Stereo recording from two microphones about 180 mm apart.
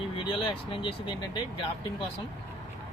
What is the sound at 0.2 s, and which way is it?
Speech, 30° left (ahead or behind).